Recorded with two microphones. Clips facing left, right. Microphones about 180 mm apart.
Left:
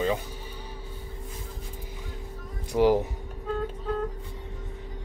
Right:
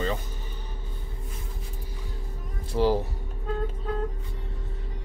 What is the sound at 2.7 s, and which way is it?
Speech, 15° left (ahead or behind).